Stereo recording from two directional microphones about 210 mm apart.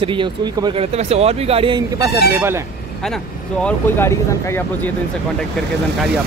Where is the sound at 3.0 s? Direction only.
5° left (ahead or behind).